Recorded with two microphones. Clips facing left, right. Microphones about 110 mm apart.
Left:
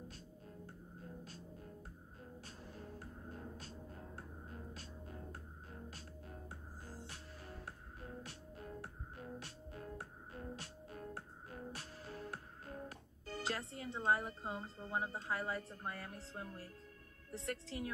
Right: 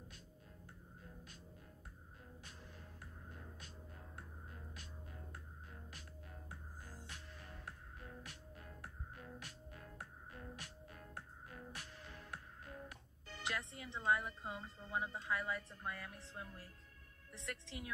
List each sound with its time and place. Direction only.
3.0 s music: 35° left (ahead or behind)
4.7 s music: 35° left (ahead or behind)
13.9 s speech: 35° left (ahead or behind)